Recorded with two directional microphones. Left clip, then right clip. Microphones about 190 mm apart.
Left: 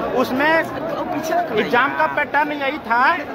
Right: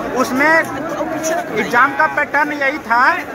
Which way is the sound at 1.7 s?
15° left (ahead or behind).